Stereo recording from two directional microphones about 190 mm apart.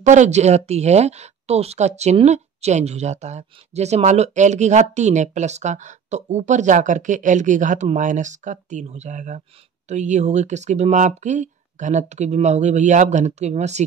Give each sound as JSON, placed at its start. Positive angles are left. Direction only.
{"t": 0.0, "sound": "speech", "side_deg": -40}